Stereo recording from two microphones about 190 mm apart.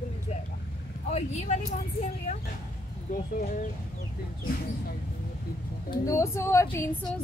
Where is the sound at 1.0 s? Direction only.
35° left (ahead or behind).